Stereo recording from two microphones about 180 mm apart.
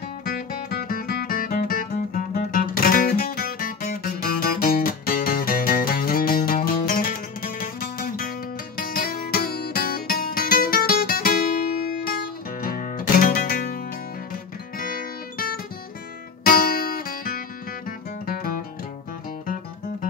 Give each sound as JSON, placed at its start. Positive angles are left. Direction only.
{"t": 0.2, "sound": "music", "side_deg": 55}